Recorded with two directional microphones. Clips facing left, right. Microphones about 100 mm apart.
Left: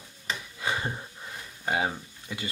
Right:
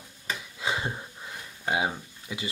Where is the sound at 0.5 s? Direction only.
15° right (ahead or behind).